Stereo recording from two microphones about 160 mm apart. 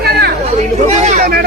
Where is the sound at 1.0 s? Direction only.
50° right (ahead or behind).